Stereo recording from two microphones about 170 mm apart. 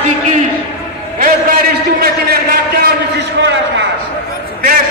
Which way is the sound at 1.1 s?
55° right (ahead or behind).